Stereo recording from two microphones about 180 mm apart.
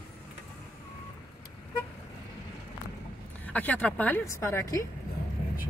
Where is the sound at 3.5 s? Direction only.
10° left (ahead or behind).